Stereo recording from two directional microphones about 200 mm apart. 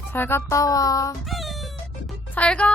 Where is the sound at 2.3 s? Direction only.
5° left (ahead or behind).